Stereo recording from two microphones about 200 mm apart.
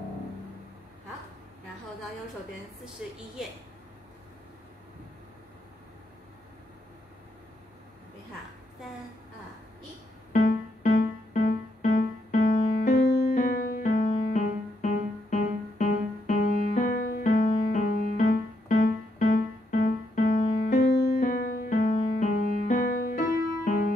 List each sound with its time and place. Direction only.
3.0 s a woman's voice: 5° right (ahead or behind)
10.4 s music: 50° left (ahead or behind)